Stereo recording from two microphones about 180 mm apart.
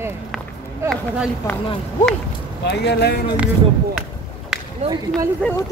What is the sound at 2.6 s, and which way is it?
Speech, 70° left (ahead or behind).